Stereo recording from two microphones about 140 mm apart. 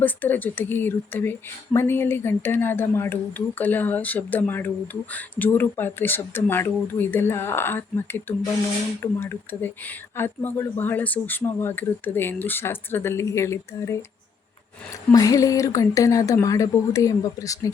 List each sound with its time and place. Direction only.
0.0 s speech: 15° left (ahead or behind)
15.1 s speech: 25° left (ahead or behind)